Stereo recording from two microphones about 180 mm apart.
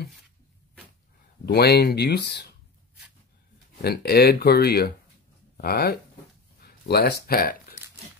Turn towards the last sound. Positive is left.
turn(degrees=60)  # may be behind; listen again after turning